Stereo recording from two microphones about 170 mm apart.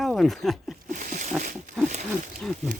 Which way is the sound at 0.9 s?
50° right (ahead or behind).